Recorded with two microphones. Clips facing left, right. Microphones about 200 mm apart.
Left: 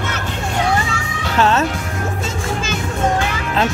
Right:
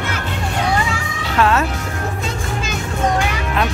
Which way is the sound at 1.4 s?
25° left (ahead or behind).